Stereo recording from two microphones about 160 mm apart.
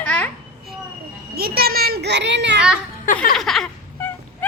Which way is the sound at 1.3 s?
70° right (ahead or behind).